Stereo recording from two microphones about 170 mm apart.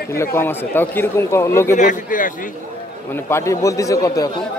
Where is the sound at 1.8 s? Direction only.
50° left (ahead or behind).